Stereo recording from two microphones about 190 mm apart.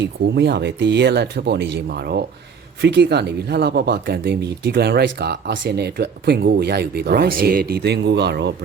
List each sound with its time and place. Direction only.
0.0 s speech: 60° right (ahead or behind)